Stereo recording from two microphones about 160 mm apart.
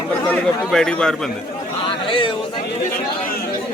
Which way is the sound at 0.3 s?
5° left (ahead or behind).